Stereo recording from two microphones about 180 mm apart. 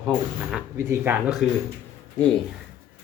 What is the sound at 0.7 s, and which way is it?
Speech, 15° right (ahead or behind).